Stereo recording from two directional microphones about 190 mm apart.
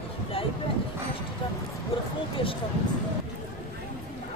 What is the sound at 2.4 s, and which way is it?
Speech, 25° left (ahead or behind).